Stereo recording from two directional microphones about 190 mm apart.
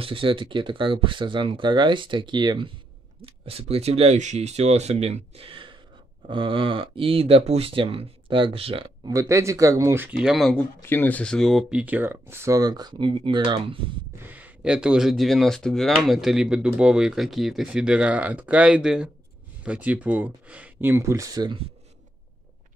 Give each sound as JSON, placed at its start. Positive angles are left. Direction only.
{"t": 0.0, "sound": "speech", "side_deg": -25}
{"t": 9.1, "sound": "speech", "side_deg": -15}
{"t": 14.2, "sound": "speech", "side_deg": -10}